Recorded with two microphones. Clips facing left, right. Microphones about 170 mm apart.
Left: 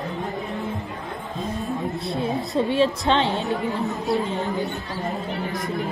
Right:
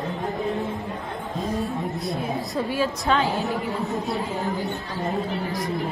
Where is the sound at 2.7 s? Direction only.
25° left (ahead or behind).